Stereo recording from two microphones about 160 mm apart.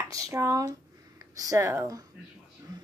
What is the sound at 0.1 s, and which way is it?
A woman's voice, 20° right (ahead or behind).